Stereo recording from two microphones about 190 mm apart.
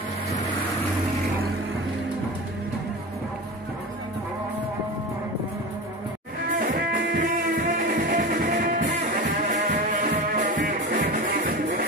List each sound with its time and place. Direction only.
6.6 s music: 45° right (ahead or behind)